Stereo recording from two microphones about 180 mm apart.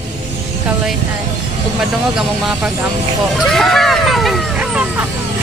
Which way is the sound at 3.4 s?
Centre (ahead or behind).